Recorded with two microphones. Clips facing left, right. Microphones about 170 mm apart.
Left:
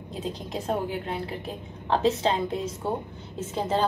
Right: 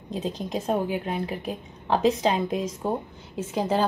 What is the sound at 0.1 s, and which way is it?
A woman's voice, 20° right (ahead or behind).